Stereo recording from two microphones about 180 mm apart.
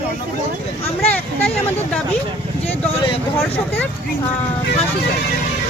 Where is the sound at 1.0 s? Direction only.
10° left (ahead or behind).